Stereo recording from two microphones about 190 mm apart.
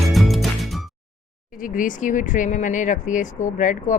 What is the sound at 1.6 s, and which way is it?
Speech, 45° left (ahead or behind).